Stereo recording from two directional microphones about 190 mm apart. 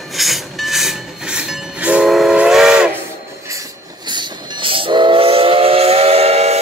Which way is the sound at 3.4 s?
15° right (ahead or behind).